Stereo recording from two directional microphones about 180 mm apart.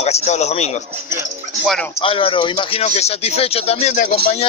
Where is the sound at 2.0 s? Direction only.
30° left (ahead or behind).